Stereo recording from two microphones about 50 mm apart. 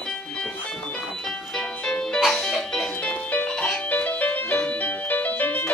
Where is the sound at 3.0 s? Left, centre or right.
Left.